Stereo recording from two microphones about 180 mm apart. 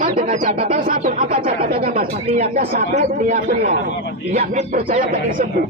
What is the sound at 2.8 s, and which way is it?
Speech, 40° right (ahead or behind).